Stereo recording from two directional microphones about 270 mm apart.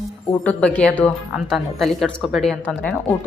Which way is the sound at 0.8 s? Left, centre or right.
Centre.